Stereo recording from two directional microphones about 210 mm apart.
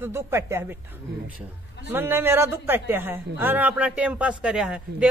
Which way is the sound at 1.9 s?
10° right (ahead or behind).